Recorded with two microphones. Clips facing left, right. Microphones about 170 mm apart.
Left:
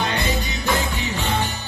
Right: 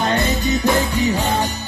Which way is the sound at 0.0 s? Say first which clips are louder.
Right 5 dB; 45° right (ahead or behind).